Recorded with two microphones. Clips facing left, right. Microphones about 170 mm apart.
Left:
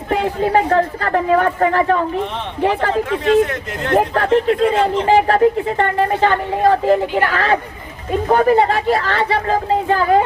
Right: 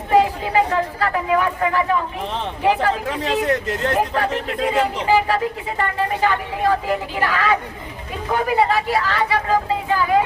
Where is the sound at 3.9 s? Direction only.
40° left (ahead or behind).